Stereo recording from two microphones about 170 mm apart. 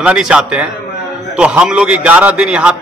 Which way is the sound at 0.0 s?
5° right (ahead or behind).